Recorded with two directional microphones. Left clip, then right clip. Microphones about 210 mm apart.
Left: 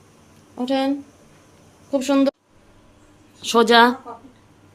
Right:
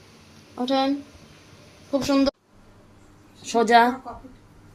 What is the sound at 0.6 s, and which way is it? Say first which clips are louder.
Speech: left 1 dB; 15° left (ahead or behind).